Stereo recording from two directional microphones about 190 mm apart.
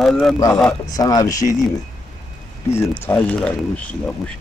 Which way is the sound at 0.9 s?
20° left (ahead or behind).